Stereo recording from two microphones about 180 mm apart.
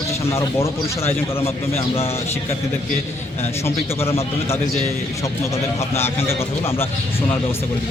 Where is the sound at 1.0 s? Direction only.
35° left (ahead or behind).